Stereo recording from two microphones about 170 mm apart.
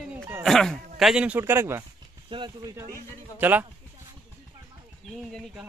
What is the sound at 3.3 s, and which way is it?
Speech, 10° right (ahead or behind).